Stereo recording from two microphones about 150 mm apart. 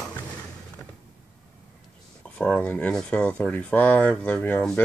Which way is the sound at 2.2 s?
10° left (ahead or behind).